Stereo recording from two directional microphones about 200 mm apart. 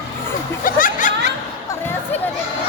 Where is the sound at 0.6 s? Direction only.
45° left (ahead or behind).